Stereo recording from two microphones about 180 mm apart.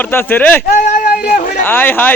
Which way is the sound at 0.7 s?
45° left (ahead or behind).